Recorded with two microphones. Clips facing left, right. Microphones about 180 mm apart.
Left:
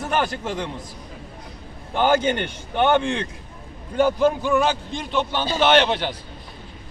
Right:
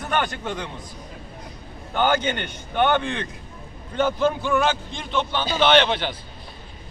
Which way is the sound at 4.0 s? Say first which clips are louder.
Left 3 dB; 10° left (ahead or behind).